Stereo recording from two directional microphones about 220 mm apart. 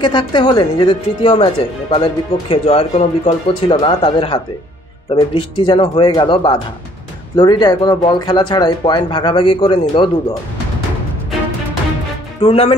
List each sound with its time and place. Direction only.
0.0 s speech: 20° left (ahead or behind)
12.4 s speech: 25° left (ahead or behind)